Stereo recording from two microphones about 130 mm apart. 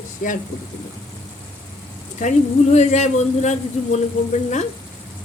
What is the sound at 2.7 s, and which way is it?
Speech, 60° left (ahead or behind).